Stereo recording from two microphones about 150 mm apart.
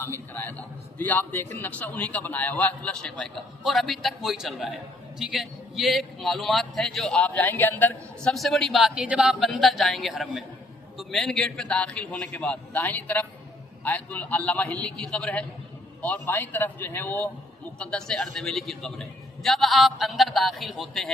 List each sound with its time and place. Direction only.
0.0 s a man's voice: 15° left (ahead or behind)